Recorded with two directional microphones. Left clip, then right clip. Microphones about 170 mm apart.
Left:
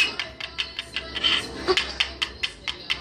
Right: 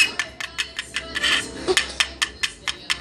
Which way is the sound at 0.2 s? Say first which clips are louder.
Right 3 dB; 45° right (ahead or behind).